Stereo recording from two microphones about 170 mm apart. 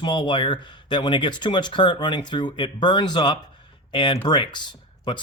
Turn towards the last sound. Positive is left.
turn(degrees=25)  # may be behind; listen again after turning